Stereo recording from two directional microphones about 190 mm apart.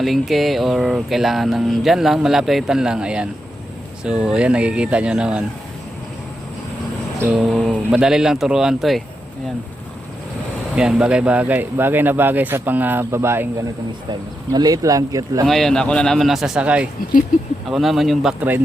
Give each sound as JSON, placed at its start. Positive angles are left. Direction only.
{"t": 0.0, "sound": "speech", "side_deg": 0}
{"t": 7.2, "sound": "speech", "side_deg": -5}
{"t": 10.8, "sound": "speech", "side_deg": -5}
{"t": 15.4, "sound": "speech", "side_deg": 0}